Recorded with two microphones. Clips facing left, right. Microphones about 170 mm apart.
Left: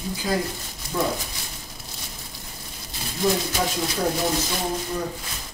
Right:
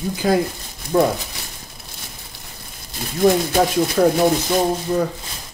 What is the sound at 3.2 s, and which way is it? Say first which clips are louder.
Speech: right 8 dB; 55° right (ahead or behind).